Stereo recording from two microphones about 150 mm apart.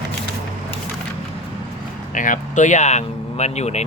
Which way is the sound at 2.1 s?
60° left (ahead or behind).